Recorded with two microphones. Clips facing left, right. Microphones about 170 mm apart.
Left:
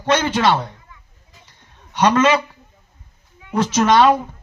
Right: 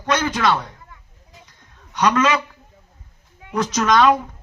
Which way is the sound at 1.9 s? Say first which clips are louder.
Left 3 dB; 30° left (ahead or behind).